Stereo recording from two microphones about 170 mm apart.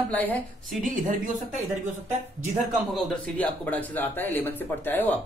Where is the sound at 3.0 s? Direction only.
10° left (ahead or behind).